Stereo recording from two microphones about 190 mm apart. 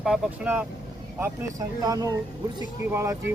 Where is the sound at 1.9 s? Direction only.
20° right (ahead or behind).